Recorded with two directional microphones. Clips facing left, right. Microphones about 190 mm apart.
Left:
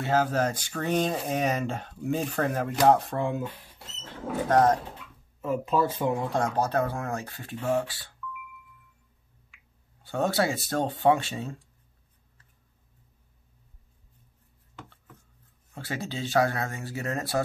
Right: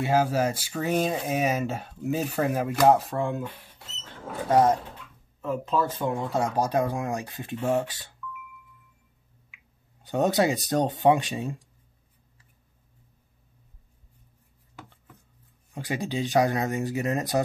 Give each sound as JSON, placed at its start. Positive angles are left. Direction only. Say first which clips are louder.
{"t": 0.0, "sound": "speech", "louder": "right 2 dB", "side_deg": -10}
{"t": 4.5, "sound": "speech", "louder": "right 1 dB", "side_deg": -10}
{"t": 5.4, "sound": "speech", "louder": "left 1 dB", "side_deg": 10}
{"t": 6.4, "sound": "speech", "louder": "right 3 dB", "side_deg": -10}
{"t": 10.0, "sound": "speech", "louder": "right 3 dB", "side_deg": -15}
{"t": 15.7, "sound": "speech", "louder": "right 4 dB", "side_deg": -15}